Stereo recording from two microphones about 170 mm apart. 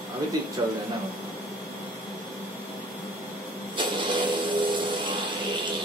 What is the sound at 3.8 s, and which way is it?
Vehicle, 25° right (ahead or behind).